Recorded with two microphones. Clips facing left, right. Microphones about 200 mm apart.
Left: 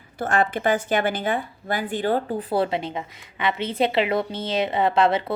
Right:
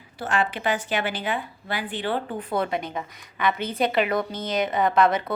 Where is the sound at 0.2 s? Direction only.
50° left (ahead or behind).